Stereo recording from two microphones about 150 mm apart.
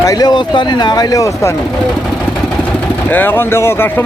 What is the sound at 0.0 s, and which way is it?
Speech, 25° left (ahead or behind).